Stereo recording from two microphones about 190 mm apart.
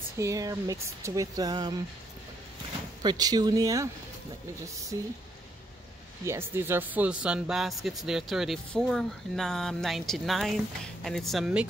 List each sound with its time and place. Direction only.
0.2 s speech: 15° right (ahead or behind)
3.0 s speech: 20° right (ahead or behind)
4.9 s speech: 20° right (ahead or behind)
6.2 s speech: 15° right (ahead or behind)